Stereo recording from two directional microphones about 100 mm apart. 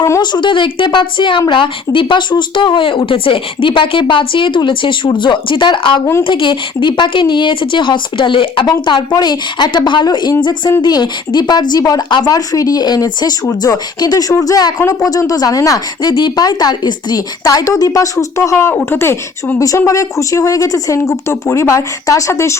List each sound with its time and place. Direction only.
0.2 s speech: 50° left (ahead or behind)
16.1 s speech: 45° left (ahead or behind)
18.5 s speech: 15° left (ahead or behind)